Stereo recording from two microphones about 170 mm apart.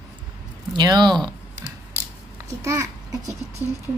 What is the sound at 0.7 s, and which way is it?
Speech, 25° right (ahead or behind).